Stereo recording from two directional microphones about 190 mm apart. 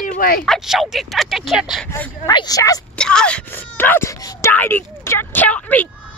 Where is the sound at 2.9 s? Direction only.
5° left (ahead or behind).